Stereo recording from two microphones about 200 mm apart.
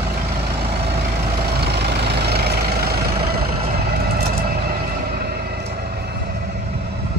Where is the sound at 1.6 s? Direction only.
55° right (ahead or behind).